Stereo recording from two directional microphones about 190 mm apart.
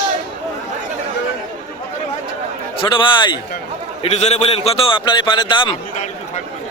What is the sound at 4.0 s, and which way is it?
A man's voice, 35° left (ahead or behind).